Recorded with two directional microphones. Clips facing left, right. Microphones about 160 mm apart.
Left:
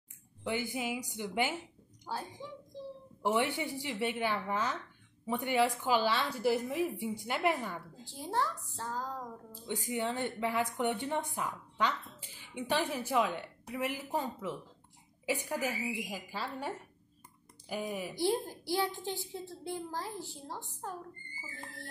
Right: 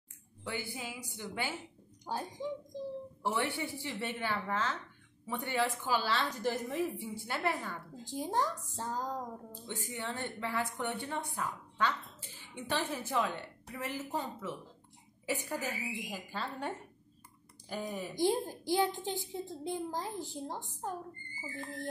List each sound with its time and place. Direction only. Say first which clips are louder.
0.4 s a woman's voice: left 5 dB; 15° left (ahead or behind)
2.1 s speech: right 2 dB; 20° right (ahead or behind)
3.2 s a woman's voice: left 4 dB; 15° left (ahead or behind)
8.1 s a woman's voice: right 1 dB; 15° right (ahead or behind)
9.6 s a woman's voice: left 8 dB; 15° left (ahead or behind)
18.1 s a woman's voice: right 2 dB; 15° right (ahead or behind)